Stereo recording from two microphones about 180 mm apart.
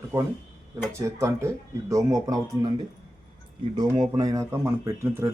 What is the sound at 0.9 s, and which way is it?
Speech, 15° right (ahead or behind).